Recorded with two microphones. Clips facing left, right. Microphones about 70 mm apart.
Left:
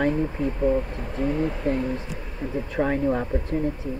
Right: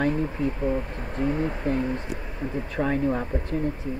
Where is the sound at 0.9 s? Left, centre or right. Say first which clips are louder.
Left 1 dB; right.